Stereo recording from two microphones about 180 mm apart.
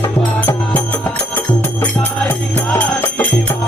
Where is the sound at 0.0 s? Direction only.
15° left (ahead or behind).